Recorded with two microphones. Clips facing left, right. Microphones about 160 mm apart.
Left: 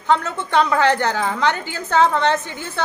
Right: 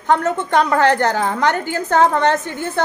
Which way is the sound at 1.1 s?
50° right (ahead or behind).